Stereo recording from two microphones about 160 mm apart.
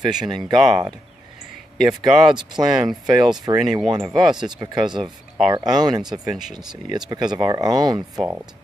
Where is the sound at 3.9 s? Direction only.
25° right (ahead or behind).